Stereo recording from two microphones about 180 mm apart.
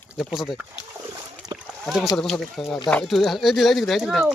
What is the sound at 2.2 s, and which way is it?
Speech, centre (ahead or behind).